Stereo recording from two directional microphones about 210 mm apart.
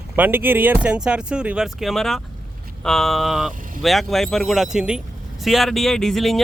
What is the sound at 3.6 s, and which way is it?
Vehicle, 40° right (ahead or behind).